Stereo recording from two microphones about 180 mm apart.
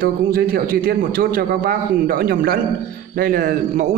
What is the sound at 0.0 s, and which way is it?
A man's voice, 55° right (ahead or behind).